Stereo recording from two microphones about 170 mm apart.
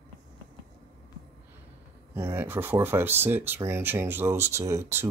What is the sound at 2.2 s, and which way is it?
Speech, 15° right (ahead or behind).